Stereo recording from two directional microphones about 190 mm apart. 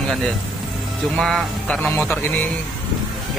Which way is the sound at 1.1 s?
Centre (ahead or behind).